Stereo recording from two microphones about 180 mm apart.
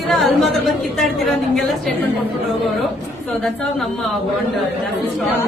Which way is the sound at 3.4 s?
5° left (ahead or behind).